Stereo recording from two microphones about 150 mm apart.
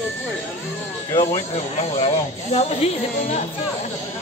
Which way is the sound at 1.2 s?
45° left (ahead or behind).